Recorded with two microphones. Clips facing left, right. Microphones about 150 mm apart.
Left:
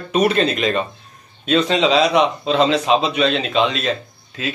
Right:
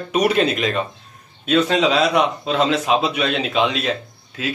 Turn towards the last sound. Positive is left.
turn(degrees=-10)  # may be behind; listen again after turning